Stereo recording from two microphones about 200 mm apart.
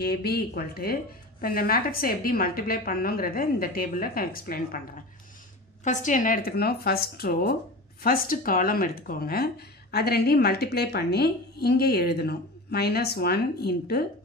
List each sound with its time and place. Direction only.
0.0 s speech: 50° left (ahead or behind)
5.9 s speech: 40° left (ahead or behind)